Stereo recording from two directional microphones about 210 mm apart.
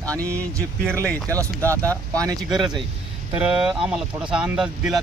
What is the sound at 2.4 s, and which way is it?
Speech, centre (ahead or behind).